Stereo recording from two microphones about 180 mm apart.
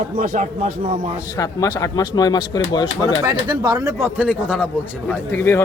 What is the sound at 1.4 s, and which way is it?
Speech, 20° left (ahead or behind).